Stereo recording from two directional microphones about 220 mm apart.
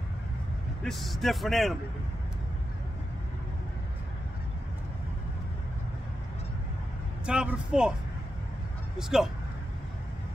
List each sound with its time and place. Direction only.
0.8 s a man's voice: centre (ahead or behind)
7.2 s a man's voice: 5° right (ahead or behind)
8.9 s a man's voice: centre (ahead or behind)